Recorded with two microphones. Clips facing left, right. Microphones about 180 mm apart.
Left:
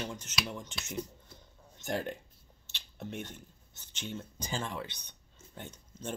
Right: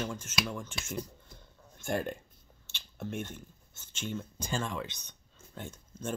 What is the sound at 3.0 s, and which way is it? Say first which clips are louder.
Speech: right 3 dB; 55° right (ahead or behind).